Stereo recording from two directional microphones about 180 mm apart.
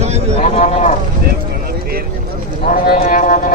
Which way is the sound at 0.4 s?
35° left (ahead or behind).